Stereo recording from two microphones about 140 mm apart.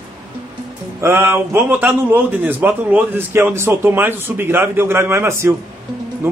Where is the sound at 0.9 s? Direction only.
20° right (ahead or behind).